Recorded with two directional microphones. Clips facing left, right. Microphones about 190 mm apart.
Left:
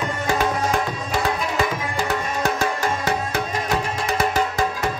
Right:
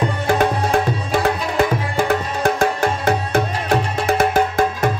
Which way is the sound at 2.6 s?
50° right (ahead or behind).